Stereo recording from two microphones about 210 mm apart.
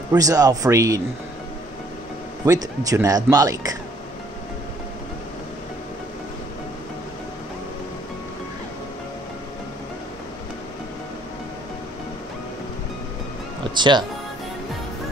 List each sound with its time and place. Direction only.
0.1 s speech: 15° right (ahead or behind)
2.4 s speech: 15° right (ahead or behind)
13.7 s speech: 20° right (ahead or behind)